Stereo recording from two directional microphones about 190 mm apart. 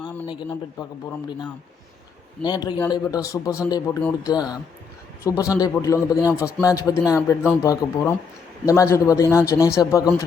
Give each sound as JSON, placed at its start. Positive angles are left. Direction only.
{"t": 0.3, "sound": "a man's voice", "side_deg": 25}
{"t": 2.4, "sound": "a man's voice", "side_deg": 20}